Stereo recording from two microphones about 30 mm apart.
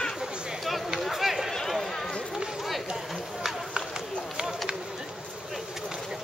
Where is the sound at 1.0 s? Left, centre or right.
Centre.